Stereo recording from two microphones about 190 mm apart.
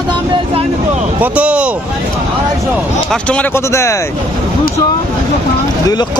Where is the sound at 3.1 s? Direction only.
5° left (ahead or behind).